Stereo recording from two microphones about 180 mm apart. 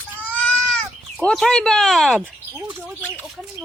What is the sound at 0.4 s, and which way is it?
Sheep, centre (ahead or behind).